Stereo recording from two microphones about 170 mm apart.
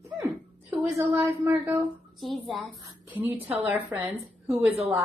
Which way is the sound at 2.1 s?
Centre (ahead or behind).